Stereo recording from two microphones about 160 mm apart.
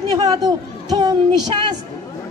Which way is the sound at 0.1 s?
25° right (ahead or behind).